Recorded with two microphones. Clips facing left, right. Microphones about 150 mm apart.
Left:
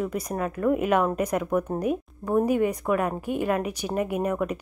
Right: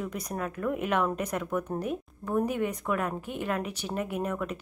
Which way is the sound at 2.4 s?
10° left (ahead or behind).